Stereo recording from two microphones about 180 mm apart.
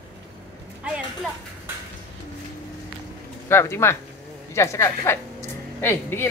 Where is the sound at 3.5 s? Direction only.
15° left (ahead or behind).